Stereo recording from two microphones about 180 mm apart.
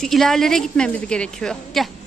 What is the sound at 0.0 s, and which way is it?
A woman's voice, centre (ahead or behind).